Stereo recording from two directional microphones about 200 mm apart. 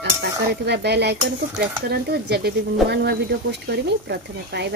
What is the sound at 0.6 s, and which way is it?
Speech, 55° right (ahead or behind).